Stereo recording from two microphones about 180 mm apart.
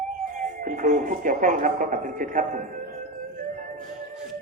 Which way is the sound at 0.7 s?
45° right (ahead or behind).